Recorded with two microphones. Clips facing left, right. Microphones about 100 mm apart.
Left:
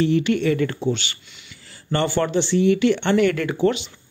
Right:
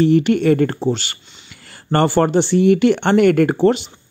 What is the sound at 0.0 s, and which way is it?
Speech, 45° right (ahead or behind).